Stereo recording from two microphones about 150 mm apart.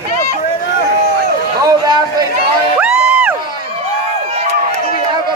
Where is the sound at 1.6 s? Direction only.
25° right (ahead or behind).